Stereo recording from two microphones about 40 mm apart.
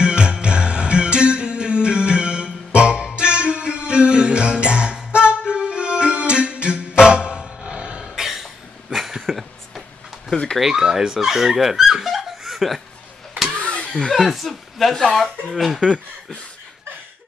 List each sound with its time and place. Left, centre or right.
0.0 s music: right
8.0 s cough: centre
8.9 s a sound: centre
10.3 s a sound: centre
10.6 s speech: centre
14.1 s speech: centre